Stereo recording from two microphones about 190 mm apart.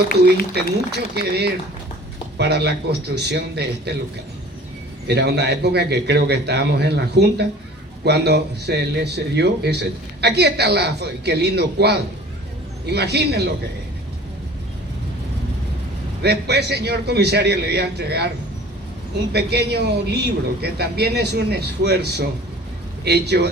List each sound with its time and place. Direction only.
0.5 s a man's voice: 60° right (ahead or behind)
5.0 s a man's voice: 60° right (ahead or behind)
16.2 s a man's voice: 60° right (ahead or behind)
19.3 s a man's voice: 60° right (ahead or behind)